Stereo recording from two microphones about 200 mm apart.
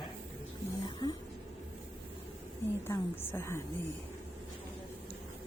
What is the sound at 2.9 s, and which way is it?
Speech, 10° left (ahead or behind).